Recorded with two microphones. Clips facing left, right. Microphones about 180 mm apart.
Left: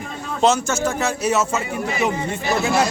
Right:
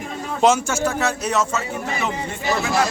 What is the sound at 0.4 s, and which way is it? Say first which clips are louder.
Speech: even; 10° right (ahead or behind).